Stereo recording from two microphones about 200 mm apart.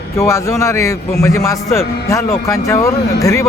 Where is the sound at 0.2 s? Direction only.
15° left (ahead or behind).